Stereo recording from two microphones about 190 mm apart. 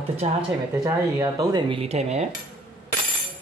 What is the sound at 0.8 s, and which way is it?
Speech, 15° right (ahead or behind).